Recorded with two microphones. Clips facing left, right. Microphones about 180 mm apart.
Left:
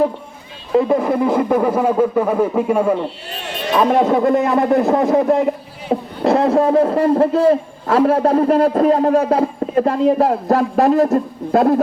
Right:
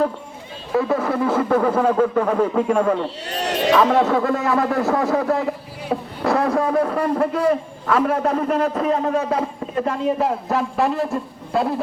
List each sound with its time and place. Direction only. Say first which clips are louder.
0.7 s speech: left 5 dB; 15° left (ahead or behind)
3.2 s a sound: right 5 dB; 85° right
3.8 s a man's voice: left 5 dB; 15° left (ahead or behind); by 11.8 s 45° left (ahead or behind)